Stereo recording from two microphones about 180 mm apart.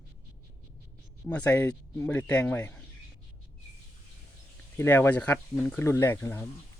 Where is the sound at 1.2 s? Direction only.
5° left (ahead or behind).